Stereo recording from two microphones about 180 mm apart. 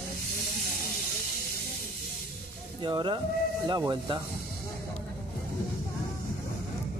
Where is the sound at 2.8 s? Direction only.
25° right (ahead or behind).